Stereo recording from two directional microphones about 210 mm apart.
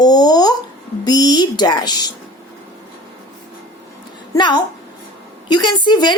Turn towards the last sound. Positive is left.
turn(degrees=20)  # may be behind; listen again after turning